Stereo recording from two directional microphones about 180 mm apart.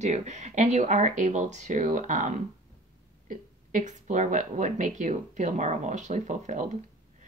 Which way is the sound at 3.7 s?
45° right (ahead or behind).